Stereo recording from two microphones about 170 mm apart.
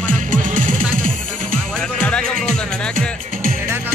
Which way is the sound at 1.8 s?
5° left (ahead or behind).